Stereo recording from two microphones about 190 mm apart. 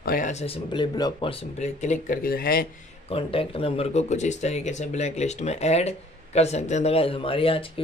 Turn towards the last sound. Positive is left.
turn(degrees=30)  # may be behind; listen again after turning